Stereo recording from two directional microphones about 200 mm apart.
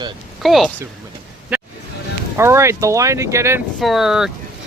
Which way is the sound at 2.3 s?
15° right (ahead or behind).